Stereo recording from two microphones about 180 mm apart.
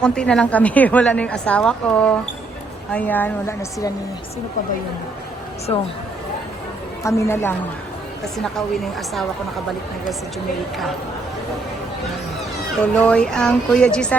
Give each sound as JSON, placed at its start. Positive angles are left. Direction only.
{"t": 0.0, "sound": "a woman's voice", "side_deg": 5}
{"t": 7.0, "sound": "a woman's voice", "side_deg": 15}
{"t": 8.2, "sound": "a woman's voice", "side_deg": 0}
{"t": 12.8, "sound": "a woman's voice", "side_deg": 5}